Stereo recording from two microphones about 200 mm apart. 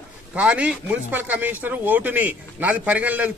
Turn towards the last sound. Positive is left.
turn(degrees=-5)  # may be behind; listen again after turning